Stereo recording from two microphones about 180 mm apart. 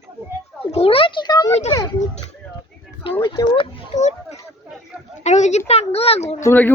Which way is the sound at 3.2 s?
30° left (ahead or behind).